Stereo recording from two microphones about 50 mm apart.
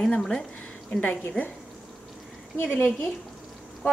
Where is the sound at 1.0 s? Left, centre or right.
Left.